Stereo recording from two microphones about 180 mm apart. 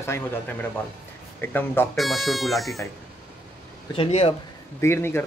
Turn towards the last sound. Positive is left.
turn(degrees=15)  # may be behind; listen again after turning